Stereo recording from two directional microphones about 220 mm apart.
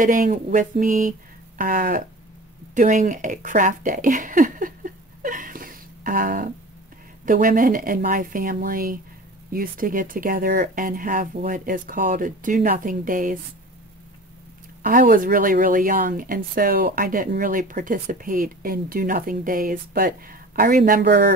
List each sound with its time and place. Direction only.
0.0 s speech: 35° right (ahead or behind)
14.8 s speech: 40° right (ahead or behind)